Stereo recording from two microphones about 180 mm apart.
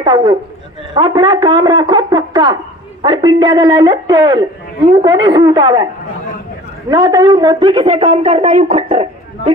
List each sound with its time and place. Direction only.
0.0 s speech: 25° right (ahead or behind)
6.9 s a woman's voice: 25° right (ahead or behind)